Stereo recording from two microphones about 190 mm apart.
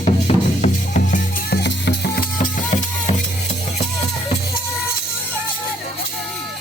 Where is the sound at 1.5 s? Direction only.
65° left (ahead or behind); by 4.4 s 35° left (ahead or behind).